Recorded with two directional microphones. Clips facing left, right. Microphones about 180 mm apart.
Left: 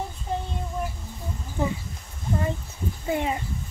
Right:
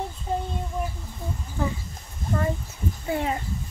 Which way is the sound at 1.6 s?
20° left (ahead or behind).